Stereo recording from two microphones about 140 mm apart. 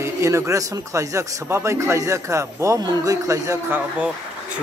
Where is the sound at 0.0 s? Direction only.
20° right (ahead or behind).